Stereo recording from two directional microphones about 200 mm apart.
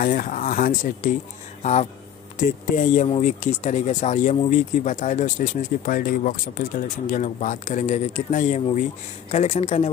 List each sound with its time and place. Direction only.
0.0 s speech: 40° left (ahead or behind)